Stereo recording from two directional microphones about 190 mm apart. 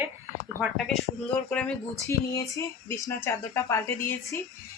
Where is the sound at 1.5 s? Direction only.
5° left (ahead or behind).